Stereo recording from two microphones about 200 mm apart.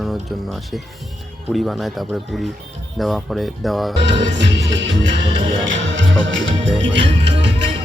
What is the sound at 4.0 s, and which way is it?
Music, 60° right (ahead or behind).